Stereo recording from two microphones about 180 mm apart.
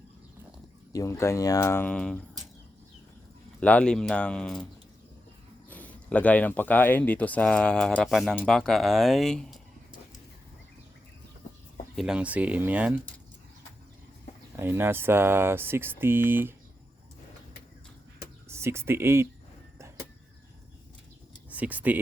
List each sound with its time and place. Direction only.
0.9 s speech: 15° left (ahead or behind)
3.6 s speech: 10° left (ahead or behind)
11.9 s speech: 5° right (ahead or behind)
14.5 s speech: 10° right (ahead or behind)
18.4 s speech: 15° right (ahead or behind)
21.5 s speech: 10° right (ahead or behind)